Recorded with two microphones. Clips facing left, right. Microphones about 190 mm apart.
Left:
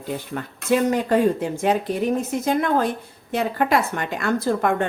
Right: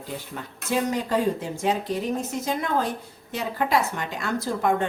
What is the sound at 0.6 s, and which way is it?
A woman's voice, 55° left (ahead or behind).